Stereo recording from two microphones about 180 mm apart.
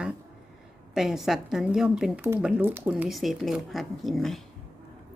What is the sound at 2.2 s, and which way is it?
A woman's voice, 15° right (ahead or behind).